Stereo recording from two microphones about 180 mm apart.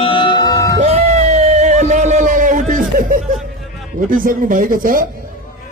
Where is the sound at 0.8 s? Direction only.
35° right (ahead or behind).